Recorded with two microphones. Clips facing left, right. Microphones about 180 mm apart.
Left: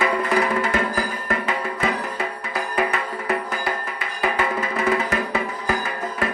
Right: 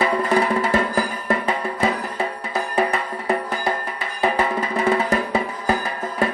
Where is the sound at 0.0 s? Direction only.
30° right (ahead or behind).